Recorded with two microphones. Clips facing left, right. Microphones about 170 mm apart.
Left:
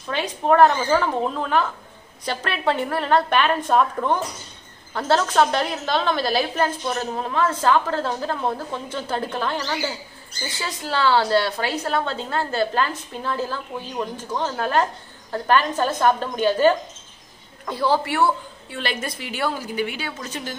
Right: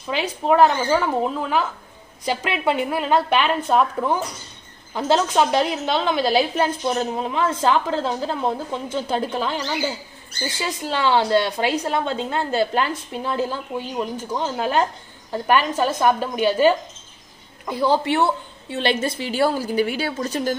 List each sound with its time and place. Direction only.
0.1 s a woman's voice: 10° right (ahead or behind); by 20.5 s 40° right (ahead or behind)